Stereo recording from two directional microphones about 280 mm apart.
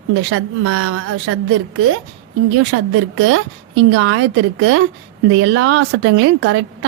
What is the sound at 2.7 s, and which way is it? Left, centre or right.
Speech, right.